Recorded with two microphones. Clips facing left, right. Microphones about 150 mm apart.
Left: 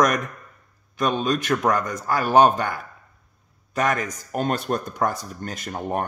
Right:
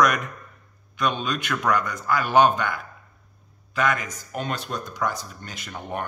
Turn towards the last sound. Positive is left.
turn(degrees=40)  # may be behind; listen again after turning